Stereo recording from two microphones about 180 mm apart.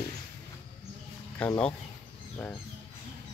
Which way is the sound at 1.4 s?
5° left (ahead or behind).